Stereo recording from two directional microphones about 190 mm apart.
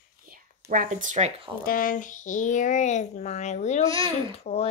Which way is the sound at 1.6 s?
50° left (ahead or behind).